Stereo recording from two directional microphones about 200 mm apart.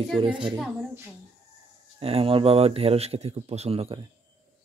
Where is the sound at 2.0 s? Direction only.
30° right (ahead or behind).